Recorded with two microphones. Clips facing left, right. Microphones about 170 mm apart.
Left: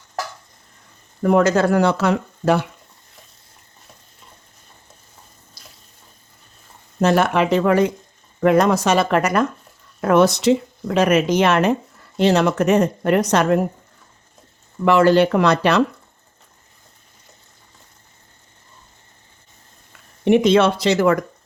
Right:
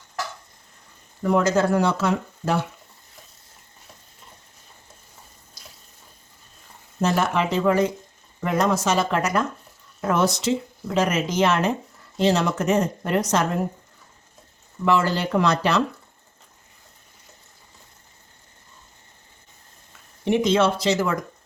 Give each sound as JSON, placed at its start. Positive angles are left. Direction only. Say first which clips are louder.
{"t": 1.2, "sound": "speech", "louder": "left 4 dB", "side_deg": 60}
{"t": 7.0, "sound": "speech", "louder": "left 5 dB", "side_deg": 65}
{"t": 14.8, "sound": "speech", "louder": "left 8 dB", "side_deg": 65}
{"t": 20.2, "sound": "speech", "louder": "left 5 dB", "side_deg": 65}